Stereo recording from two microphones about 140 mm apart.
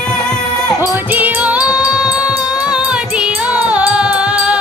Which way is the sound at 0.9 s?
10° right (ahead or behind).